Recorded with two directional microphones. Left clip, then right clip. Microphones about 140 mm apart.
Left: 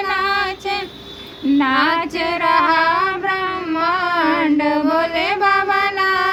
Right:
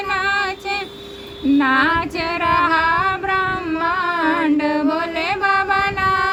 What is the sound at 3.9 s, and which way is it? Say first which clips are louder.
Mantra: left 1 dB; 20° right (ahead or behind).